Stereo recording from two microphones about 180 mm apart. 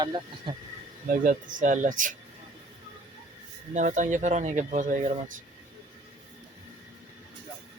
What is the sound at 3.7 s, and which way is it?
Speech, 45° right (ahead or behind).